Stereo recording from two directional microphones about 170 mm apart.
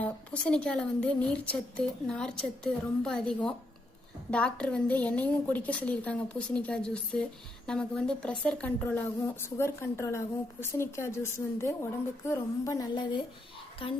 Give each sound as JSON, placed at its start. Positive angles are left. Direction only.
{"t": 0.0, "sound": "a woman's voice", "side_deg": 5}